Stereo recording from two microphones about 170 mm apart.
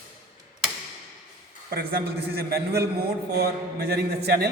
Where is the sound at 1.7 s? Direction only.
70° right (ahead or behind).